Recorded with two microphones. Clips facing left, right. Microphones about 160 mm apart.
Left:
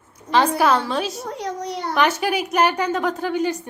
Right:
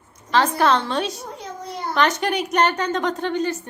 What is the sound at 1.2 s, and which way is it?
Speech, 75° left (ahead or behind).